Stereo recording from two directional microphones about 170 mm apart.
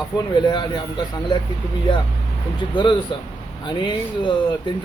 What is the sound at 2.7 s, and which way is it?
Speech, 30° left (ahead or behind).